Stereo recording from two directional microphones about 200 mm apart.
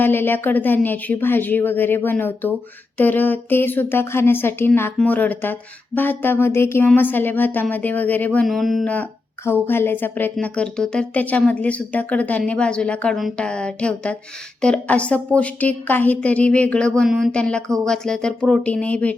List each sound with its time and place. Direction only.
0.0 s a woman's voice: 10° left (ahead or behind)